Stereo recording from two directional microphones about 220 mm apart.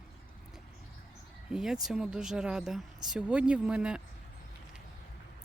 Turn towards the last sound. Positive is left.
turn(degrees=-5)  # may be behind; listen again after turning